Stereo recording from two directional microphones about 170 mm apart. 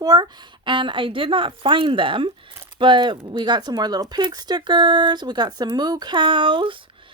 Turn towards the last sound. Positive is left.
turn(degrees=-30)  # may be behind; listen again after turning